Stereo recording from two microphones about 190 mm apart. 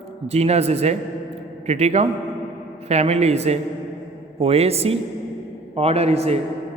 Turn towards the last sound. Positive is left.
turn(degrees=-35)  # may be behind; listen again after turning